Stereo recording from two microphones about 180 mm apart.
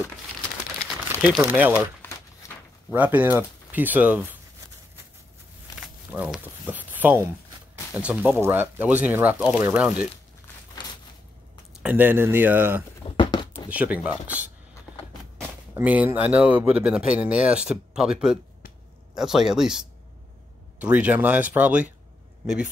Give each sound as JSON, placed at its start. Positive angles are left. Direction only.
{"t": 1.2, "sound": "speech", "side_deg": -10}
{"t": 2.0, "sound": "a sound", "side_deg": 15}
{"t": 2.9, "sound": "speech", "side_deg": -10}
{"t": 5.8, "sound": "crumpling", "side_deg": -5}
{"t": 7.9, "sound": "speech", "side_deg": -5}
{"t": 11.8, "sound": "speech", "side_deg": -10}
{"t": 13.1, "sound": "a sound", "side_deg": 25}
{"t": 13.7, "sound": "speech", "side_deg": -10}
{"t": 15.7, "sound": "speech", "side_deg": -10}
{"t": 20.8, "sound": "speech", "side_deg": -10}